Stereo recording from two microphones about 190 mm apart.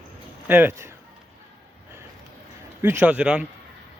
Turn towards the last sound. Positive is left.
turn(degrees=-5)  # may be behind; listen again after turning